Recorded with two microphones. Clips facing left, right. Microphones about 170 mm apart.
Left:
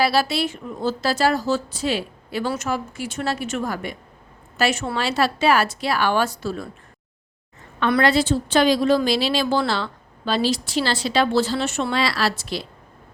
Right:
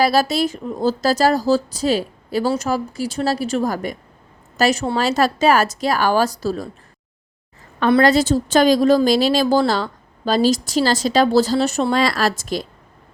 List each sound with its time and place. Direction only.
0.0 s a woman's voice: 40° right (ahead or behind)
7.8 s a woman's voice: 35° right (ahead or behind)